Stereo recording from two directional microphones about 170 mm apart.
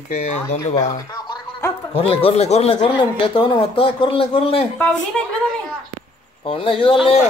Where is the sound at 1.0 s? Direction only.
25° left (ahead or behind).